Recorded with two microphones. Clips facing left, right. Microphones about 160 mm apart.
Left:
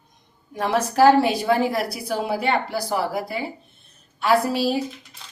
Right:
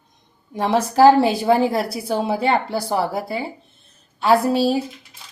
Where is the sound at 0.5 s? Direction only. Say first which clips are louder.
Right 3 dB; 25° right (ahead or behind).